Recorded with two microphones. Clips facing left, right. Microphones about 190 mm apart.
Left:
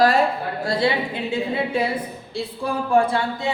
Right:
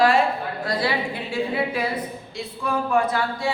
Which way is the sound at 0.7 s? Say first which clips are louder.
Left 4 dB; 25° left (ahead or behind).